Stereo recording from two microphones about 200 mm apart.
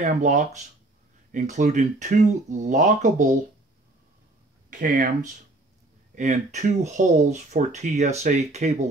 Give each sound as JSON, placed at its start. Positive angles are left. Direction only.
{"t": 0.0, "sound": "speech", "side_deg": -35}
{"t": 4.6, "sound": "speech", "side_deg": -40}